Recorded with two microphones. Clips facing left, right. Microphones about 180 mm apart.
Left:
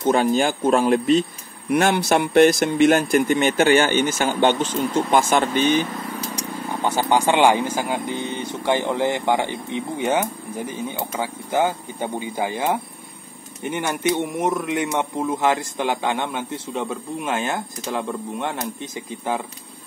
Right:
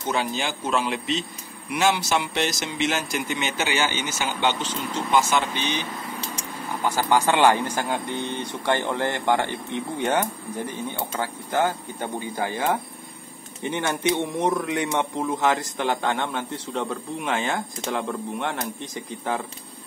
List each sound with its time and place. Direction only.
0.0 s speech: 50° left (ahead or behind)
7.0 s speech: 20° left (ahead or behind)